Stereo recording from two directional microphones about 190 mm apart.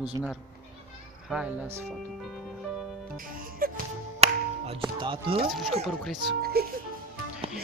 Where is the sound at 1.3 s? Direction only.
5° right (ahead or behind).